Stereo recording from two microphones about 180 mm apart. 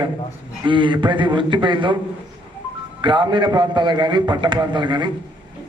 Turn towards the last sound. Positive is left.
turn(degrees=-25)  # may be behind; listen again after turning